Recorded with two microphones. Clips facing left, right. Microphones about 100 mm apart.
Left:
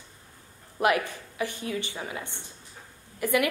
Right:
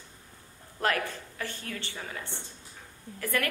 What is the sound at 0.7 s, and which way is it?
A woman's voice, 15° left (ahead or behind).